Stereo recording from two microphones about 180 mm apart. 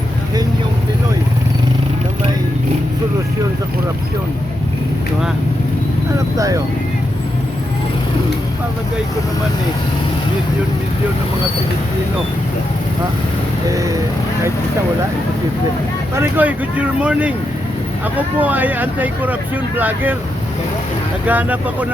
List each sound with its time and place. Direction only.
6.1 s speech: 20° right (ahead or behind)
16.1 s speech: 10° right (ahead or behind)
18.3 s speech: 10° right (ahead or behind)
21.2 s speech: 10° right (ahead or behind)